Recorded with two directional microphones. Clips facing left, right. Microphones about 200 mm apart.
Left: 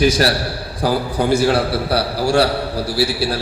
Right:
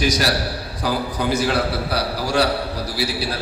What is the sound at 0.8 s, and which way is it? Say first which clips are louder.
A man's voice: left 5 dB; 30° left (ahead or behind).